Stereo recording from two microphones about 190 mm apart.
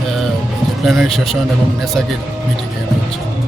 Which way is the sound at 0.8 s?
Centre (ahead or behind).